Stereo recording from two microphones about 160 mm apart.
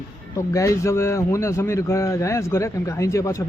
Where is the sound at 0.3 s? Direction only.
20° left (ahead or behind).